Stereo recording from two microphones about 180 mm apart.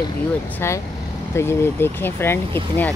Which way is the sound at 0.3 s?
10° left (ahead or behind).